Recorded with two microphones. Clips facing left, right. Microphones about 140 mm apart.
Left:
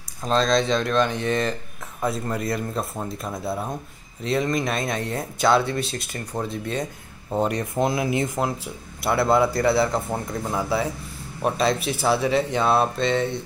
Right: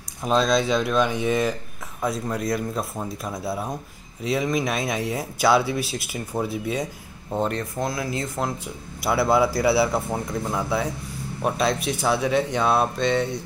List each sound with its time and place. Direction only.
0.2 s speech: 5° right (ahead or behind)
7.7 s speech: 20° left (ahead or behind)
8.4 s speech: 5° left (ahead or behind)